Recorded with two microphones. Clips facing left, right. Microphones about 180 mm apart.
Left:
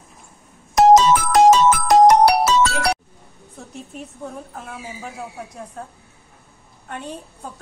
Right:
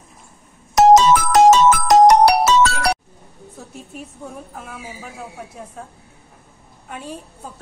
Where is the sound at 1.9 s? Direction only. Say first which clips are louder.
Right 1 dB; 85° right.